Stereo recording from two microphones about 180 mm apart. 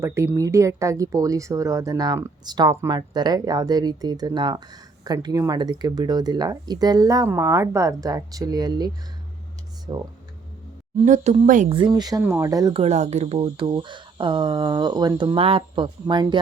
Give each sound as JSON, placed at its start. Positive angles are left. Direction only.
{"t": 0.0, "sound": "speech", "side_deg": -15}
{"t": 9.9, "sound": "speech", "side_deg": -25}
{"t": 11.0, "sound": "speech", "side_deg": -40}
{"t": 11.7, "sound": "speech", "side_deg": -25}
{"t": 12.7, "sound": "speech", "side_deg": -35}